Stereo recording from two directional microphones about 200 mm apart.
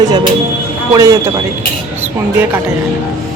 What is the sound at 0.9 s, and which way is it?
Speech, 15° right (ahead or behind).